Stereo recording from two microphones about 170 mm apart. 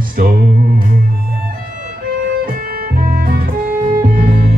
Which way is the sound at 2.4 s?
60° right (ahead or behind).